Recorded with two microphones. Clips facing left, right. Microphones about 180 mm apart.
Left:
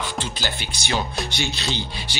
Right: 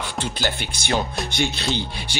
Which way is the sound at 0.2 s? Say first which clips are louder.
Right 3 dB; 55° right (ahead or behind).